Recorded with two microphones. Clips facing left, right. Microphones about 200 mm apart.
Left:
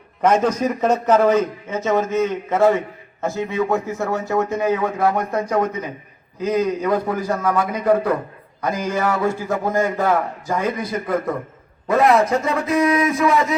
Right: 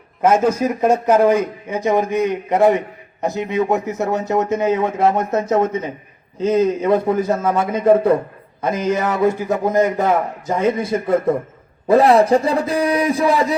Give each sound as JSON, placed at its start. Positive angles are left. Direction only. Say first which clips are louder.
{"t": 0.2, "sound": "a man's voice", "louder": "right 2 dB", "side_deg": -10}